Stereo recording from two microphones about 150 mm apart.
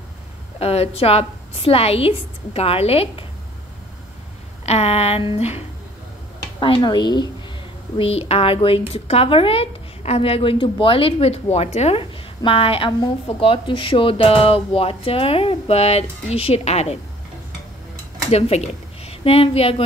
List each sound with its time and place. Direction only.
0.6 s speech: 40° left (ahead or behind)
4.6 s speech: 45° left (ahead or behind)
6.6 s speech: 30° left (ahead or behind)
8.0 s speech: 40° left (ahead or behind)
18.3 s speech: 40° left (ahead or behind)